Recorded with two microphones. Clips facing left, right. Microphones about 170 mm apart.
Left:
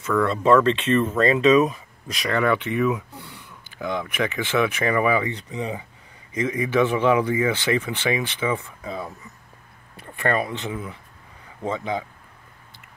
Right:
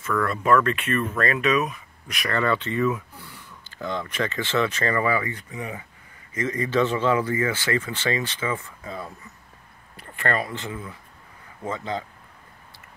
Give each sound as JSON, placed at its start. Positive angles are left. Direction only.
{"t": 0.0, "sound": "speech", "side_deg": 20}
{"t": 2.2, "sound": "speech", "side_deg": 15}
{"t": 6.3, "sound": "speech", "side_deg": 10}